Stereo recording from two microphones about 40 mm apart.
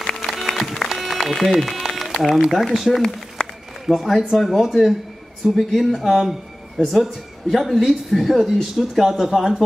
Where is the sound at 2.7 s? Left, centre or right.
Centre.